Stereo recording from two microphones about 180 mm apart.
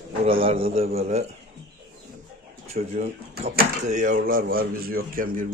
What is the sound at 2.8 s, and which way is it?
Speech, 45° right (ahead or behind).